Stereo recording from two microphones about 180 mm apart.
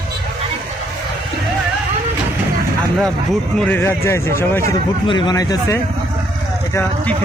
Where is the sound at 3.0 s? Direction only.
5° left (ahead or behind).